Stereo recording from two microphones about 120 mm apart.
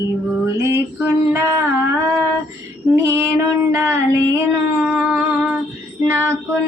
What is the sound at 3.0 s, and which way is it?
Female singing, 25° right (ahead or behind).